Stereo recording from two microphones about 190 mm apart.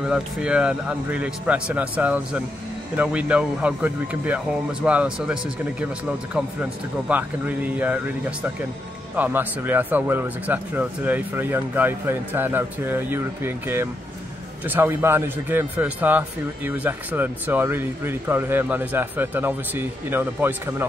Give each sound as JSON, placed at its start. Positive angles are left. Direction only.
{"t": 0.0, "sound": "speech", "side_deg": -5}